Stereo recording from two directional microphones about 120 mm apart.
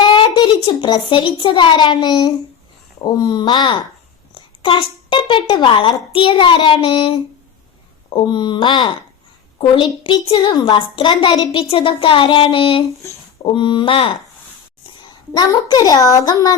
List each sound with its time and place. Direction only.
0.0 s a child's voice: 40° left (ahead or behind)
15.3 s a child's voice: 35° left (ahead or behind)